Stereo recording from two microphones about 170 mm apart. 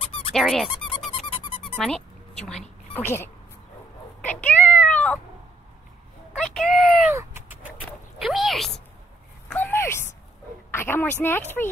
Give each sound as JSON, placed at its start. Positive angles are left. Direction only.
{"t": 0.0, "sound": "squeak", "side_deg": 35}
{"t": 0.3, "sound": "speech", "side_deg": 0}
{"t": 1.2, "sound": "a sound", "side_deg": 30}
{"t": 1.8, "sound": "speech", "side_deg": 5}
{"t": 4.2, "sound": "cat", "side_deg": 10}
{"t": 6.3, "sound": "a sound", "side_deg": 0}
{"t": 7.0, "sound": "crow", "side_deg": -15}
{"t": 8.2, "sound": "speech", "side_deg": 0}
{"t": 9.5, "sound": "a sound", "side_deg": 10}
{"t": 10.7, "sound": "a woman's voice", "side_deg": 15}